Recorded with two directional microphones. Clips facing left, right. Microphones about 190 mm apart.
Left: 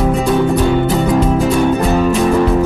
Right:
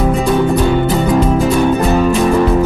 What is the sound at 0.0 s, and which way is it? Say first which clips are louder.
Music: even; centre (ahead or behind).